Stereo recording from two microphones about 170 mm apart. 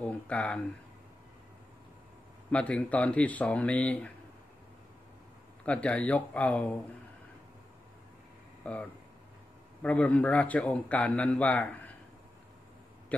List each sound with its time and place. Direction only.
0.0 s a man's voice: 10° left (ahead or behind)
2.5 s a man's voice: 10° left (ahead or behind)
5.7 s a man's voice: 5° left (ahead or behind)
8.6 s a man's voice: 10° left (ahead or behind)